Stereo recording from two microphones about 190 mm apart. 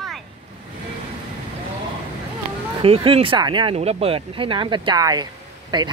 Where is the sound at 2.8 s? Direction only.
30° right (ahead or behind).